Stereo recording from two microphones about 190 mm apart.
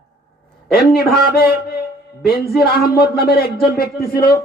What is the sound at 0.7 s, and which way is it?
A man's voice, 55° left (ahead or behind).